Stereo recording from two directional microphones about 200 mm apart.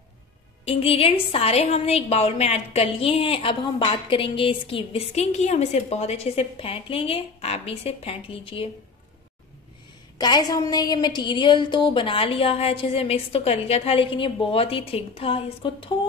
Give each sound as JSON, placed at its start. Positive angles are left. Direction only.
{"t": 0.7, "sound": "a woman's voice", "side_deg": 30}
{"t": 10.1, "sound": "a woman's voice", "side_deg": 20}